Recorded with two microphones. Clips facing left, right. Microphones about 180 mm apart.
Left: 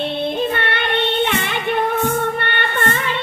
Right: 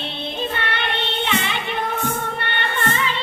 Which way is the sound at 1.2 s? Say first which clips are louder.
Left 4 dB; 55° left (ahead or behind).